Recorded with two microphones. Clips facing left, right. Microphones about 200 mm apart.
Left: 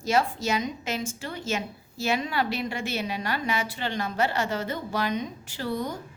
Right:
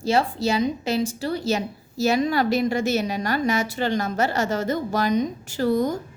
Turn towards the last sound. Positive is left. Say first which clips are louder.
# right 9 dB
turn(degrees=-45)  # may be behind; listen again after turning